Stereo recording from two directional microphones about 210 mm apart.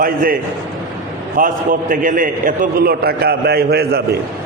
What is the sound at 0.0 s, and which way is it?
Speech, 45° right (ahead or behind).